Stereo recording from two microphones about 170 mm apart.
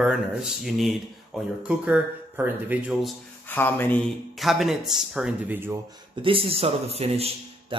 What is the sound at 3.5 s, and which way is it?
Speech, 10° left (ahead or behind).